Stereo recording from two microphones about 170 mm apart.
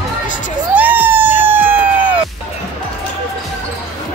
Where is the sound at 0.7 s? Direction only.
10° right (ahead or behind).